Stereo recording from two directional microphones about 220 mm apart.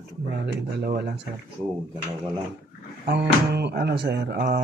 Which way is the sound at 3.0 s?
50° right (ahead or behind).